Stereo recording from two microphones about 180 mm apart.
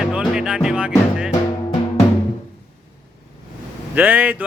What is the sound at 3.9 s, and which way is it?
Speech, 10° right (ahead or behind).